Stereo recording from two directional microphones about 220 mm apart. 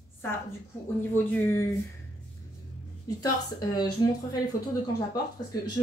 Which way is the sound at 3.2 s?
20° left (ahead or behind).